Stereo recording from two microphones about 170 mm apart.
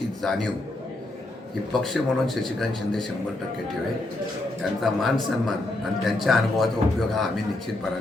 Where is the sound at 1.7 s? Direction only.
Centre (ahead or behind).